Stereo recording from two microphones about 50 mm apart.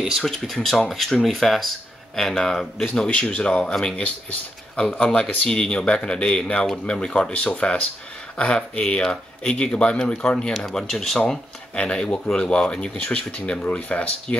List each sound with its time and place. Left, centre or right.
0.2 s speech: centre
2.9 s speech: centre
4.8 s speech: left
5.4 s speech: centre
10.5 s speech: centre
11.7 s speech: centre